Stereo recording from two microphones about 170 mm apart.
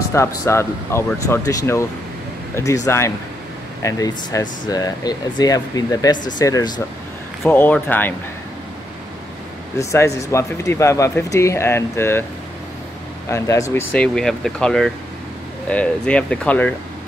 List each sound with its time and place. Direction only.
0.1 s speech: 15° left (ahead or behind)
7.4 s speech: 10° left (ahead or behind)
9.8 s speech: 15° left (ahead or behind)
13.3 s speech: 20° left (ahead or behind)
13.9 s speech: 5° left (ahead or behind)